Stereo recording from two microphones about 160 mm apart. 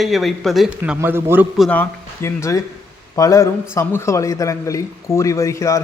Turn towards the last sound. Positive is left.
turn(degrees=20)  # may be behind; listen again after turning